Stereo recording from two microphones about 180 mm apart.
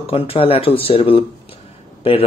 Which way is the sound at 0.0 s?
30° left (ahead or behind).